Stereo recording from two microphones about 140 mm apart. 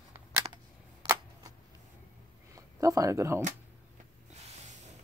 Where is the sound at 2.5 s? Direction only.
25° right (ahead or behind).